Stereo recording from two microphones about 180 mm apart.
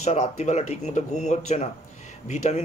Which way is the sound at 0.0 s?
35° left (ahead or behind).